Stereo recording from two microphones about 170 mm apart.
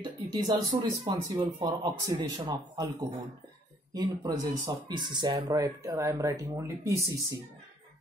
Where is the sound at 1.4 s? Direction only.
35° right (ahead or behind).